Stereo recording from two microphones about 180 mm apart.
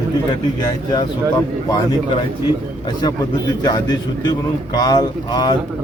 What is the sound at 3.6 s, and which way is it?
A man's voice, 20° left (ahead or behind).